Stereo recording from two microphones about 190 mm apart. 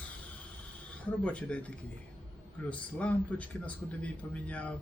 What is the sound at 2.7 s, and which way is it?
A man's voice, 5° left (ahead or behind).